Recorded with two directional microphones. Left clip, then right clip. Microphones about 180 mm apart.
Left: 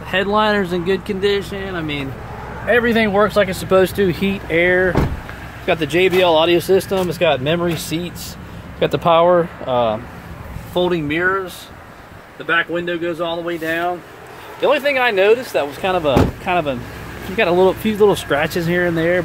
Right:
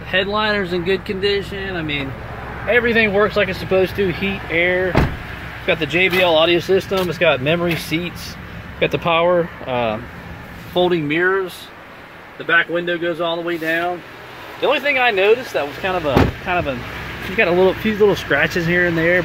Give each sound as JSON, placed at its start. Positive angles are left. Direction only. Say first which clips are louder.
{"t": 0.1, "sound": "speech", "louder": "left 2 dB", "side_deg": 25}
{"t": 2.7, "sound": "speech", "louder": "even", "side_deg": 25}
{"t": 5.7, "sound": "speech", "louder": "left 1 dB", "side_deg": 20}
{"t": 8.7, "sound": "speech", "louder": "left 3 dB", "side_deg": 20}
{"t": 9.3, "sound": "speech", "louder": "left 3 dB", "side_deg": 10}
{"t": 14.6, "sound": "speech", "louder": "left 1 dB", "side_deg": 20}
{"t": 17.4, "sound": "speech", "louder": "left 1 dB", "side_deg": 10}